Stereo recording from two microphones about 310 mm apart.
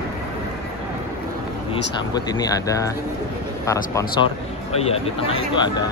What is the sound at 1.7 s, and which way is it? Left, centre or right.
Speech, centre.